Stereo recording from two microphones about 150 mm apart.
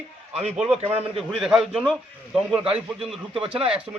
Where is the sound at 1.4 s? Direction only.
5° right (ahead or behind).